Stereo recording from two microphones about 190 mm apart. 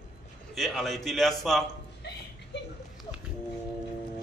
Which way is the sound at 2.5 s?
65° left (ahead or behind).